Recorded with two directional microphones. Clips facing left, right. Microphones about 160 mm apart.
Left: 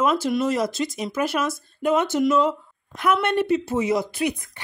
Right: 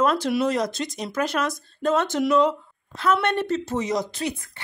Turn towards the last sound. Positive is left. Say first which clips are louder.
# left 4 dB
turn(degrees=15)  # may be behind; listen again after turning